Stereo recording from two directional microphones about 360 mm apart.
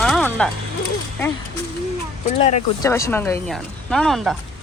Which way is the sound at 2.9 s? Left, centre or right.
Centre.